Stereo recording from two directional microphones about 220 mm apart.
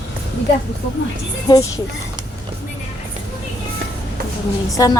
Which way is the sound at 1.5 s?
15° left (ahead or behind).